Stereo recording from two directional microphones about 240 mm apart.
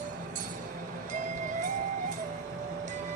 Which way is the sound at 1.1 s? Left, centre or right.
Right.